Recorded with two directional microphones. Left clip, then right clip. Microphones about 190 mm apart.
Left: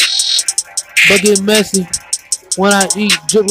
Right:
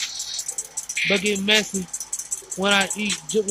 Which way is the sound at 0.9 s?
40° left (ahead or behind).